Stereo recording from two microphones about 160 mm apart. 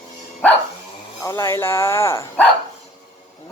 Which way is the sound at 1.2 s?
20° left (ahead or behind).